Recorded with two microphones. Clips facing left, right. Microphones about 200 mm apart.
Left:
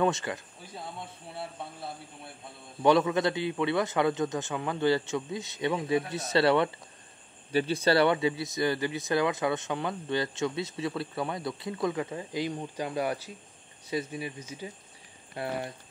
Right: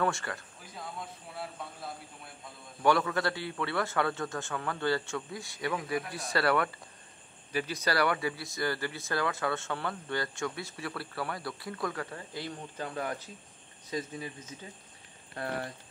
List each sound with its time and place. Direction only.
0.0 s speech: 20° left (ahead or behind)